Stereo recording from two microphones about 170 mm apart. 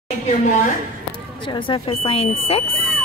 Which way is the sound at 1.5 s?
30° left (ahead or behind).